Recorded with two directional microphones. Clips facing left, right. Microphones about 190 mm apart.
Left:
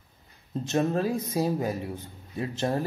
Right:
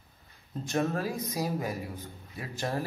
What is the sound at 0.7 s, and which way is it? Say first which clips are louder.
Speech: left 4 dB; 25° left (ahead or behind).